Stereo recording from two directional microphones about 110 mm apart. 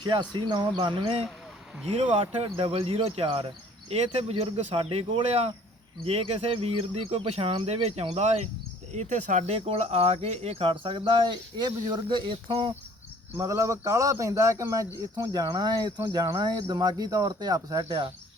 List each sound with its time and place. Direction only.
0.0 s speech: 45° right (ahead or behind)
13.4 s speech: 30° right (ahead or behind)